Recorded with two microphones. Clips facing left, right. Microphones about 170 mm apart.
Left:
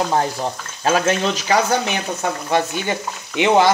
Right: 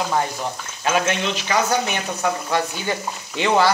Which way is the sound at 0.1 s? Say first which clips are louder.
Left 3 dB; 30° left (ahead or behind).